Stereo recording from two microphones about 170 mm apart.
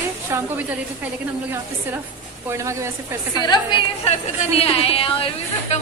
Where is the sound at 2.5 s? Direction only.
15° right (ahead or behind).